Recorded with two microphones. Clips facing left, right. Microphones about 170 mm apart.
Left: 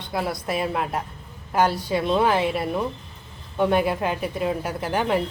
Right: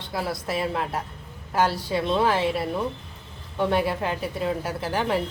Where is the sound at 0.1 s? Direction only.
20° left (ahead or behind).